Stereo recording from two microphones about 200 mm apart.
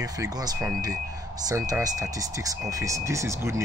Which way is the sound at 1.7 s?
15° right (ahead or behind).